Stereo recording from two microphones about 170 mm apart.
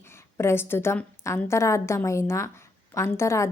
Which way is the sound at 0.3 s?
15° left (ahead or behind).